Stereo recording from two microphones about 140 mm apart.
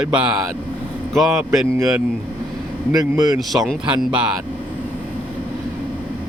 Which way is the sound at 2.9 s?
25° right (ahead or behind).